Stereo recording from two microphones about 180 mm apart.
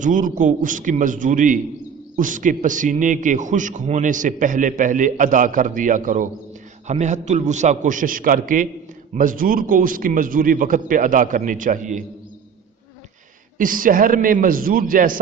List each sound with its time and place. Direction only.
0.0 s a man's voice: 45° right (ahead or behind)
13.6 s a man's voice: 50° right (ahead or behind)